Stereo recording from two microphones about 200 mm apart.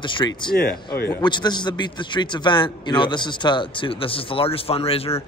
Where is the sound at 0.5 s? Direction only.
50° left (ahead or behind).